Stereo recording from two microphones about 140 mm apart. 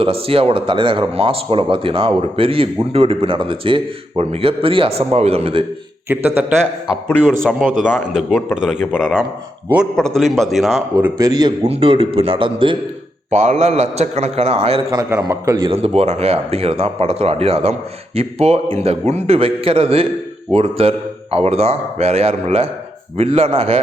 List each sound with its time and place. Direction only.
0.0 s speech: 40° right (ahead or behind)
6.1 s a man's voice: 15° right (ahead or behind)
6.6 s a man's voice: 5° left (ahead or behind)
7.6 s a man's voice: 70° right (ahead or behind)
8.8 s a man's voice: centre (ahead or behind)
10.9 s a man's voice: 25° right (ahead or behind)
11.6 s speech: 45° right (ahead or behind)
13.3 s speech: 50° right (ahead or behind)
14.8 s a man's voice: 25° right (ahead or behind)
15.7 s speech: 45° right (ahead or behind)